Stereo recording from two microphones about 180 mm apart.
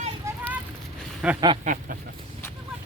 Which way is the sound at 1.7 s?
40° right (ahead or behind).